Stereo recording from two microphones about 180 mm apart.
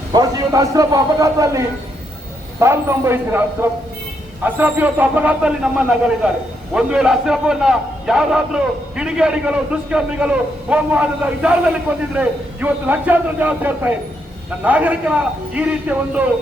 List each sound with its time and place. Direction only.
0.1 s a man's voice: 20° right (ahead or behind)